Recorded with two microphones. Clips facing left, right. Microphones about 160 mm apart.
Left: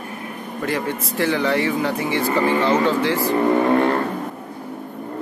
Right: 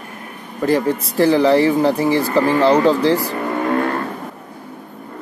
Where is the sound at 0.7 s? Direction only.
35° right (ahead or behind).